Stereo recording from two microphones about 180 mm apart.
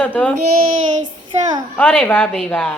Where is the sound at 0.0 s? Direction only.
5° left (ahead or behind).